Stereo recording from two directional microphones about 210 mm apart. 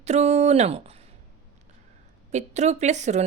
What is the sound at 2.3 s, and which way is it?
Speech, 35° right (ahead or behind).